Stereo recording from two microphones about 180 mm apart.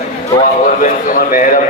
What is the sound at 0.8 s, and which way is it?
Speech, 45° left (ahead or behind).